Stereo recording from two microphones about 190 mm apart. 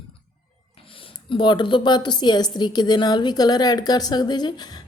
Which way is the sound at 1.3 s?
25° left (ahead or behind).